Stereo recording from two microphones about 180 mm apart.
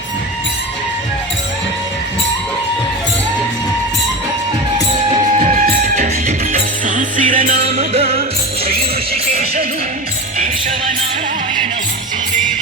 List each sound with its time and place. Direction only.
5.3 s music: 40° right (ahead or behind)
9.3 s music: 55° right (ahead or behind)